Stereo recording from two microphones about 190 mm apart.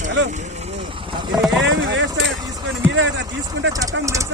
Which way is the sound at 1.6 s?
75° right (ahead or behind).